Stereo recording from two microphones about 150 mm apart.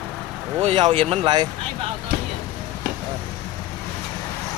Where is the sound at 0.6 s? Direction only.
35° right (ahead or behind).